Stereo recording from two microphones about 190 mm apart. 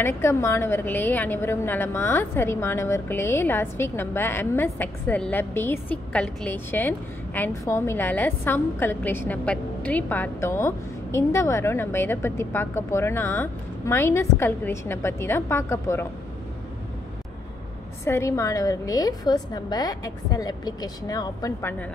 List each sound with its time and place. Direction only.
0.0 s a woman's voice: 15° left (ahead or behind)
18.0 s a woman's voice: 15° left (ahead or behind)